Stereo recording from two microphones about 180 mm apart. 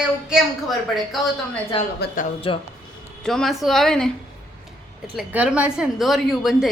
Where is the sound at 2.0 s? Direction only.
65° left (ahead or behind).